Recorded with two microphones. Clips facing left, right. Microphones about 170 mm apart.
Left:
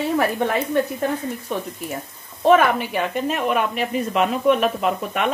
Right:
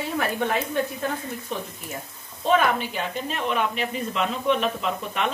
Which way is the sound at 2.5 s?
65° left (ahead or behind).